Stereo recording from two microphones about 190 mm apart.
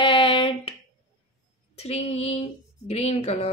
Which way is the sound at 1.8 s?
35° left (ahead or behind).